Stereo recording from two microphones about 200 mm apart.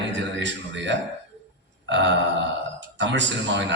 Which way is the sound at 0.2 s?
65° right (ahead or behind).